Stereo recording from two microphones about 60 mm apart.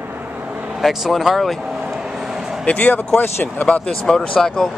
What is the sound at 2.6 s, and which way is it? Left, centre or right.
Speech, left.